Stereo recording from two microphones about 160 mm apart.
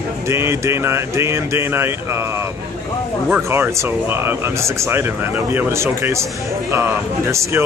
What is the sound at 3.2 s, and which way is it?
Speech, 10° right (ahead or behind).